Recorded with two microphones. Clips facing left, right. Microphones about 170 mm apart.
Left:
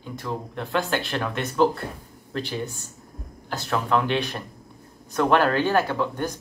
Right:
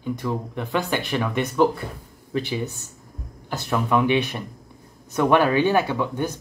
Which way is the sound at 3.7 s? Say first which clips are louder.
Right 3 dB; 10° right (ahead or behind).